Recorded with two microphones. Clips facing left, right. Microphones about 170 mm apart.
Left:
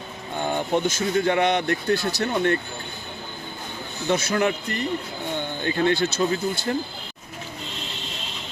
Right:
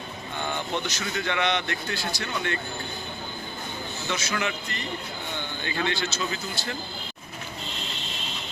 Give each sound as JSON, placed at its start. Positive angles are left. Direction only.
{"t": 0.3, "sound": "speech", "side_deg": 45}
{"t": 4.1, "sound": "speech", "side_deg": 50}
{"t": 5.6, "sound": "speech", "side_deg": 45}